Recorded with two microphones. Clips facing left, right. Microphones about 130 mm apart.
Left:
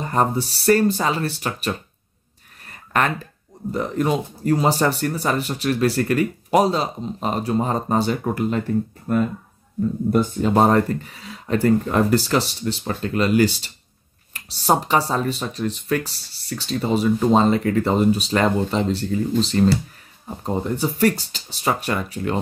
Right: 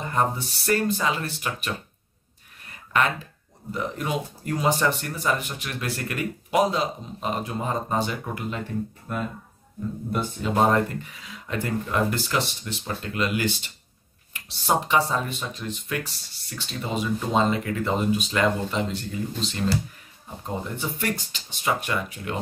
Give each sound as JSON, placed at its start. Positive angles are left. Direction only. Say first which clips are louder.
{"t": 0.0, "sound": "speech", "louder": "left 4 dB", "side_deg": 35}
{"t": 2.6, "sound": "a sound", "louder": "left 2 dB", "side_deg": 45}
{"t": 3.7, "sound": "speech", "louder": "left 6 dB", "side_deg": 40}